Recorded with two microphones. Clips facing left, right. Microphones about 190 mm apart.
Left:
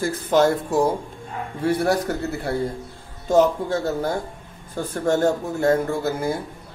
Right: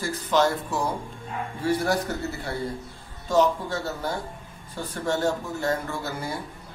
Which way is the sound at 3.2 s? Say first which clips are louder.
Left 4 dB; 50° left (ahead or behind).